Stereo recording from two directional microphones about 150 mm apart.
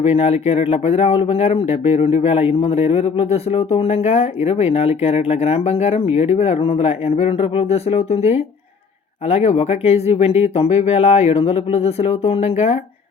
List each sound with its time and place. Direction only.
0.0 s speech: 40° left (ahead or behind)